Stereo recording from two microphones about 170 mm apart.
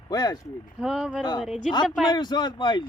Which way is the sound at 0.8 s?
5° right (ahead or behind).